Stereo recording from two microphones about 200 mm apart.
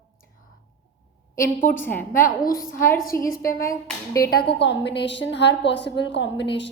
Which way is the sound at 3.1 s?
10° left (ahead or behind).